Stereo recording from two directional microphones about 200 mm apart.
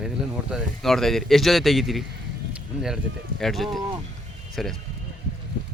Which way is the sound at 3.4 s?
Centre (ahead or behind).